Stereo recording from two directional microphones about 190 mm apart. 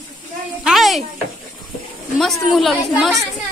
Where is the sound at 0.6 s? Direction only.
Centre (ahead or behind).